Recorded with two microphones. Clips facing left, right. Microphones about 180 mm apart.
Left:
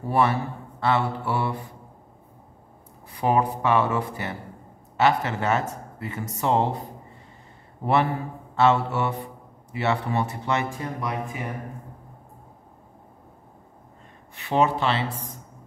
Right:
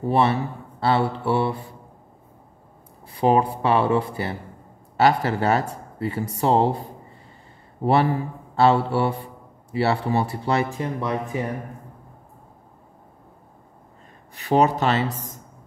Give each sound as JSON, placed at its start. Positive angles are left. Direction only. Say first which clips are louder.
{"t": 0.1, "sound": "speech", "louder": "right 1 dB", "side_deg": -30}
{"t": 3.1, "sound": "speech", "louder": "right 3 dB", "side_deg": -30}
{"t": 7.8, "sound": "speech", "louder": "right 3 dB", "side_deg": -35}
{"t": 14.3, "sound": "speech", "louder": "right 3 dB", "side_deg": -40}